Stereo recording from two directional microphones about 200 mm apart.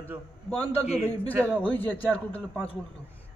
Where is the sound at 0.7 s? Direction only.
30° left (ahead or behind).